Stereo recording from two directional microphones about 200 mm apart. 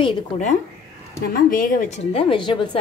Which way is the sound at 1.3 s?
45° left (ahead or behind).